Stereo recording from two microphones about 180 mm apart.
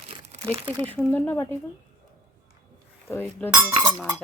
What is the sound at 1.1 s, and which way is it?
Dishes, 10° left (ahead or behind).